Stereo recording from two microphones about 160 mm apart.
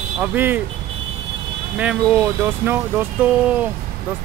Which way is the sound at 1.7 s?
10° right (ahead or behind).